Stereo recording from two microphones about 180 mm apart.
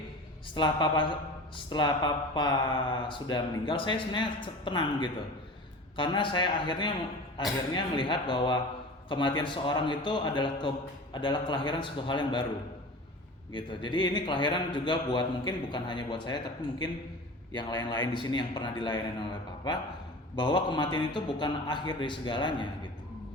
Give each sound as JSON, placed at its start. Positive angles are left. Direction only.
{"t": 0.5, "sound": "a man's voice", "side_deg": 25}
{"t": 13.5, "sound": "a man's voice", "side_deg": 25}